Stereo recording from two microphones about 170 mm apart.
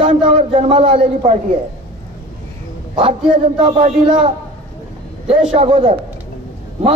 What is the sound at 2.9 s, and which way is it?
A man's voice, 35° right (ahead or behind).